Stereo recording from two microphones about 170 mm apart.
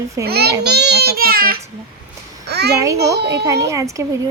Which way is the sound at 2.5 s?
75° right (ahead or behind).